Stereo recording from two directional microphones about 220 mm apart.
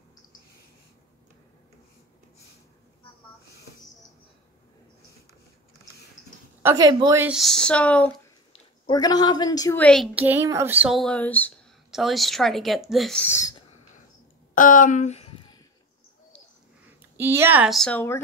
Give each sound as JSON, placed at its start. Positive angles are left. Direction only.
{"t": 6.6, "sound": "a woman's voice", "side_deg": -15}
{"t": 7.2, "sound": "speech", "side_deg": 0}
{"t": 8.8, "sound": "a woman's voice", "side_deg": 20}
{"t": 9.8, "sound": "speech", "side_deg": -5}
{"t": 14.5, "sound": "a sound", "side_deg": 35}
{"t": 17.0, "sound": "speech", "side_deg": -10}